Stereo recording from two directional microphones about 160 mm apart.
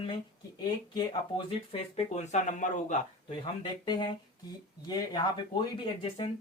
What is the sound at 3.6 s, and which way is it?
Speech, 30° left (ahead or behind).